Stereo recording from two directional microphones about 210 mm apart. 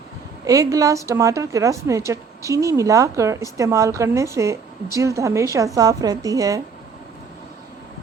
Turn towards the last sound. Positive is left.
turn(degrees=-15)  # may be behind; listen again after turning